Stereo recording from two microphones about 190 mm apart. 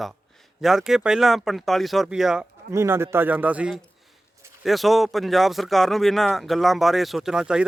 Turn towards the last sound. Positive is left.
turn(degrees=-5)  # may be behind; listen again after turning